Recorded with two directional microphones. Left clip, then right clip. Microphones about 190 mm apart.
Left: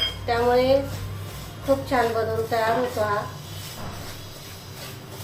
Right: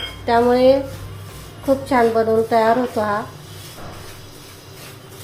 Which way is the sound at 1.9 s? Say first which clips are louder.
Right 7 dB; 50° right (ahead or behind).